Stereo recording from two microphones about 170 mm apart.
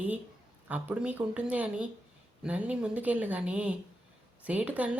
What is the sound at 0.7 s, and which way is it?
Speech, 10° right (ahead or behind).